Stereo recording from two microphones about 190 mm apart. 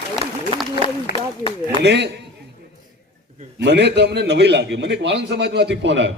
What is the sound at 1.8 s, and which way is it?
Speech, 65° right (ahead or behind).